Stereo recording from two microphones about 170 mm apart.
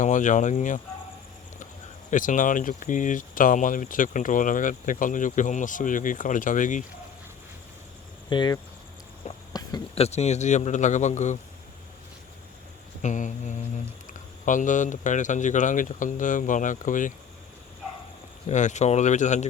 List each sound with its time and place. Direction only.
0.0 s speech: 50° left (ahead or behind)
2.0 s speech: 50° left (ahead or behind)
8.3 s speech: 25° left (ahead or behind)
9.5 s a sound: 25° left (ahead or behind)
9.9 s speech: 40° left (ahead or behind)
13.0 s speech: 45° left (ahead or behind)
18.4 s speech: 45° left (ahead or behind)